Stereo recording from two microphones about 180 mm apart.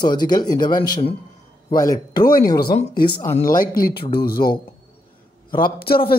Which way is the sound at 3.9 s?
25° left (ahead or behind).